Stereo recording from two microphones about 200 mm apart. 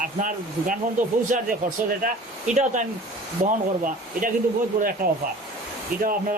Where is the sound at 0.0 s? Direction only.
40° right (ahead or behind).